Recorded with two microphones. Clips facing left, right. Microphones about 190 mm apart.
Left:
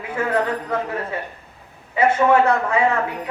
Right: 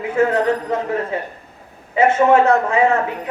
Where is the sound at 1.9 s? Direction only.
25° right (ahead or behind).